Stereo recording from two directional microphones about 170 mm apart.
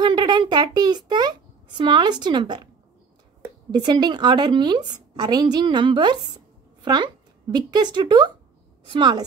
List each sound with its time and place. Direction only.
0.0 s a child's voice: 25° right (ahead or behind)
3.7 s a woman's voice: 25° right (ahead or behind)